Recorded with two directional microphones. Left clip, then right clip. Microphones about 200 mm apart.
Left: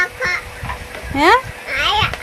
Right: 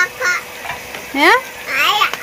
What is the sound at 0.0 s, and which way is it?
Fowl, 5° left (ahead or behind).